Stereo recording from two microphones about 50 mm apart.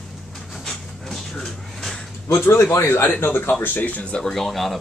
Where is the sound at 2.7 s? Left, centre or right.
Left.